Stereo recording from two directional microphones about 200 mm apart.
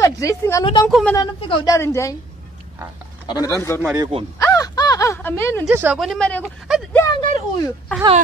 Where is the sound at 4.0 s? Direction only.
25° right (ahead or behind).